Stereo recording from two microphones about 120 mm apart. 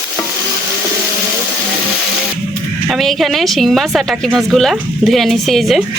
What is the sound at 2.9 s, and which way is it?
A woman's voice, centre (ahead or behind).